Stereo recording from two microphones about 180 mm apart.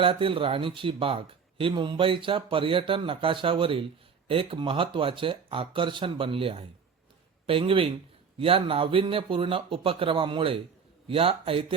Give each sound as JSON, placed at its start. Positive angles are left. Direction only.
{"t": 0.0, "sound": "speech", "side_deg": -30}